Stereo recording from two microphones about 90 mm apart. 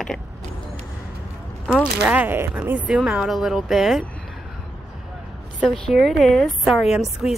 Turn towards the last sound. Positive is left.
turn(degrees=-5)  # may be behind; listen again after turning